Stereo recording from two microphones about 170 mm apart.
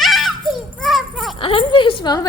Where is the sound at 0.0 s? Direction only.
Centre (ahead or behind).